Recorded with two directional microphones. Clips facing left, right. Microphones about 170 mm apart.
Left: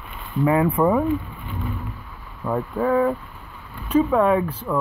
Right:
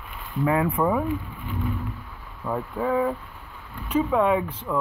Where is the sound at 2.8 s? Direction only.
10° right (ahead or behind).